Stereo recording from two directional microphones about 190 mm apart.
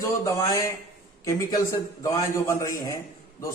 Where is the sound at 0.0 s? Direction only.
15° left (ahead or behind).